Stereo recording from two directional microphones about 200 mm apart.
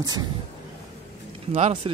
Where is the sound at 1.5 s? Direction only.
30° right (ahead or behind).